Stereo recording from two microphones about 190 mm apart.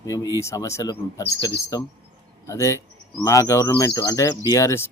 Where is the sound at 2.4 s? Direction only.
15° left (ahead or behind).